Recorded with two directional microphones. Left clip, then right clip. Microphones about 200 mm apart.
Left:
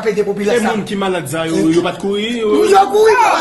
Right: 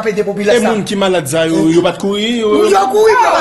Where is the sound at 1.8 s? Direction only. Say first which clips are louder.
Right 3 dB; 40° right (ahead or behind).